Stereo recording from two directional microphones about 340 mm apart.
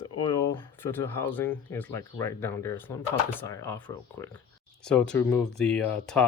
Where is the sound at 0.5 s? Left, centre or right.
Centre.